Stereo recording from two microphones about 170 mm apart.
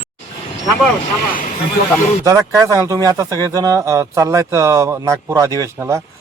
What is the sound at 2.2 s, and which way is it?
A man's voice, 20° right (ahead or behind).